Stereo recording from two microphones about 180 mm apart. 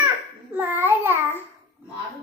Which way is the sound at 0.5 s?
10° right (ahead or behind).